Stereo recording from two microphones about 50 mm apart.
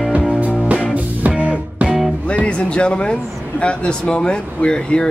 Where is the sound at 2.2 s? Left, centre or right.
Left.